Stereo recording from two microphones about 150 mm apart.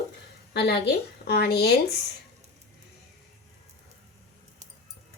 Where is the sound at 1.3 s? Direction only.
90° left.